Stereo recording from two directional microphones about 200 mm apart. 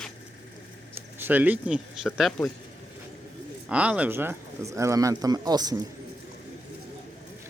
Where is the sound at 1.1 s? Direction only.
10° right (ahead or behind).